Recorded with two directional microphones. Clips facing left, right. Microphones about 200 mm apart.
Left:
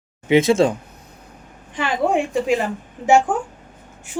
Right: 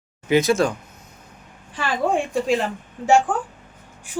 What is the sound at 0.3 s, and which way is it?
Speech, 25° left (ahead or behind).